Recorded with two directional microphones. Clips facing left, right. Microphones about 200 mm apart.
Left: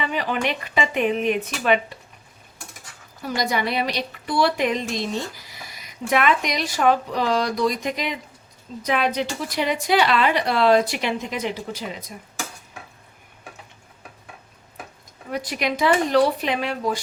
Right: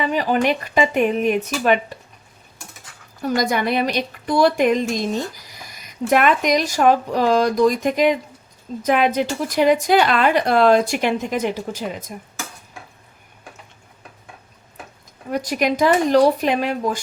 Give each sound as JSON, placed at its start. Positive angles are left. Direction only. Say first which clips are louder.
{"t": 0.0, "sound": "a woman's voice", "louder": "right 6 dB", "side_deg": -40}
{"t": 3.5, "sound": "a woman's voice", "louder": "right 4 dB", "side_deg": -50}
{"t": 15.3, "sound": "a woman's voice", "louder": "right 5 dB", "side_deg": -45}